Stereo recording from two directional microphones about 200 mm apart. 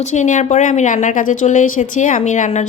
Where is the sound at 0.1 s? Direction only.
40° left (ahead or behind).